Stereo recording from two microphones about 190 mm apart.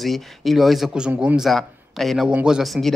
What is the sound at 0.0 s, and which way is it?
Speech, centre (ahead or behind).